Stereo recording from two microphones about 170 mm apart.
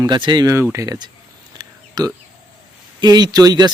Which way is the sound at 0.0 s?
25° right (ahead or behind).